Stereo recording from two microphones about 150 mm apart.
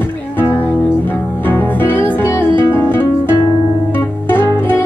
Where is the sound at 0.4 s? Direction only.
15° left (ahead or behind).